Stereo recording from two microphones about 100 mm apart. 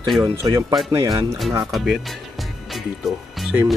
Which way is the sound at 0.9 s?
30° right (ahead or behind).